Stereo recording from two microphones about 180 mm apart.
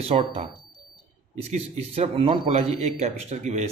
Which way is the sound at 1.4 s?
35° right (ahead or behind).